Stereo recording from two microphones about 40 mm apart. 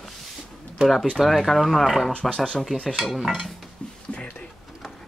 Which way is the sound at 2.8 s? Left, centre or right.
Centre.